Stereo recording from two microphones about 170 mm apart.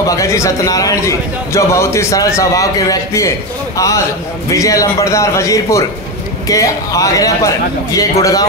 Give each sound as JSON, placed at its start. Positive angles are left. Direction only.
{"t": 0.0, "sound": "a man's voice", "side_deg": 20}